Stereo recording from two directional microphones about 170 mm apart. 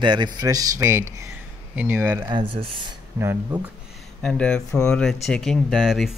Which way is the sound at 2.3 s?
30° right (ahead or behind).